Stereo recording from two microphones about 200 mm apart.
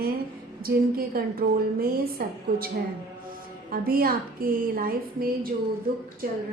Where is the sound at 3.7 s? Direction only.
45° right (ahead or behind).